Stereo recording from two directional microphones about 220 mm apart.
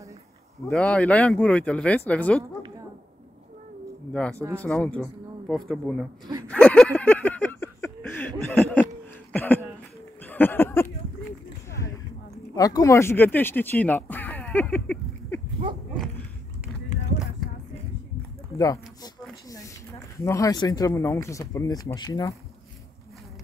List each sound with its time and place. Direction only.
0.7 s speech: 5° left (ahead or behind)
4.1 s speech: 5° left (ahead or behind)
6.5 s a sound: 5° left (ahead or behind)
8.5 s speech: 5° left (ahead or behind)
10.2 s a sound: 10° left (ahead or behind)
12.5 s speech: 15° left (ahead or behind)
20.2 s speech: 15° left (ahead or behind)